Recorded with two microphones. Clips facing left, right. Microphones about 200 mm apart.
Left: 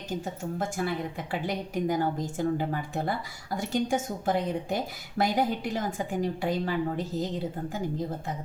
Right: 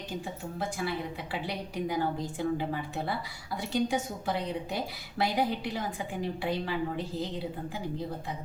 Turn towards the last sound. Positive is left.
turn(degrees=45)  # may be behind; listen again after turning